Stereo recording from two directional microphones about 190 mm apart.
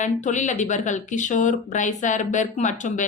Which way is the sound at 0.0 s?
40° left (ahead or behind).